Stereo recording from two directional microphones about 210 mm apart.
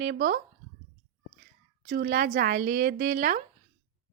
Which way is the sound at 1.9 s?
45° right (ahead or behind).